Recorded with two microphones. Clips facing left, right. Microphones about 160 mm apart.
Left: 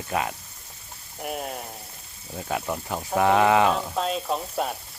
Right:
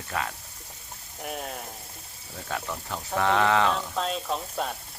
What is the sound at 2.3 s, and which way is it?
Speech, 20° left (ahead or behind).